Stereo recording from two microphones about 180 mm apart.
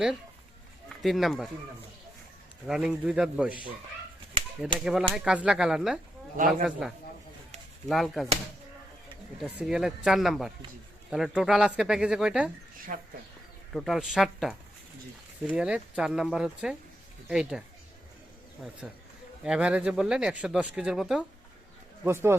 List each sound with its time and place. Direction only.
0.9 s speech: centre (ahead or behind)
2.6 s speech: 5° right (ahead or behind)
4.8 s speech: 5° right (ahead or behind)
9.4 s speech: centre (ahead or behind)
12.9 s speech: 50° right (ahead or behind)
13.7 s speech: centre (ahead or behind)
18.6 s speech: 5° right (ahead or behind)
22.0 s speech: 15° right (ahead or behind)